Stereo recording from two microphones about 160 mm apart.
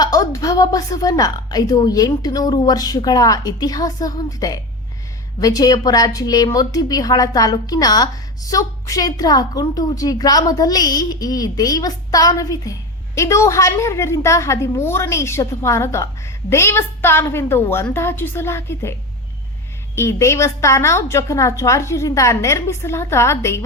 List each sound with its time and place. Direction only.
0.0 s a woman's voice: 20° left (ahead or behind)
20.0 s a woman's voice: 15° left (ahead or behind)